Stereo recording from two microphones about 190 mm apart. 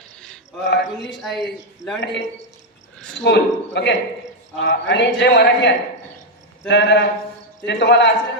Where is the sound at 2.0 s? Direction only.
65° left (ahead or behind).